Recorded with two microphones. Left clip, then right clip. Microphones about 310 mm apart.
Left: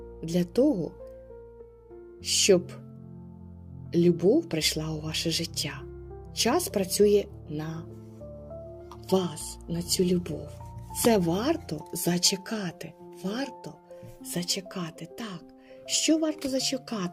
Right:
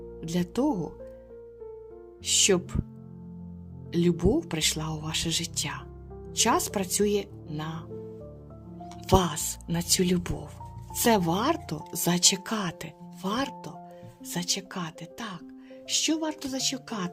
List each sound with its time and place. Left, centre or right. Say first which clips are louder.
0.2 s speech: left 4 dB; centre
2.2 s speech: left 1 dB; centre
3.9 s speech: left 3 dB; centre
9.0 s speech: right 4 dB; right